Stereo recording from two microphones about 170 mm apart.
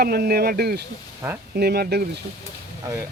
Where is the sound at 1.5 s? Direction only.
65° right (ahead or behind).